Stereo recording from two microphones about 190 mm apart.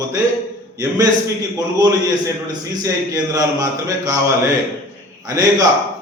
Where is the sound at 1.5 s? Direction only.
20° right (ahead or behind).